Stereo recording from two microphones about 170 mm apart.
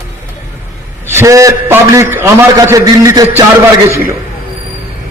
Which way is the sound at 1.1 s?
20° right (ahead or behind).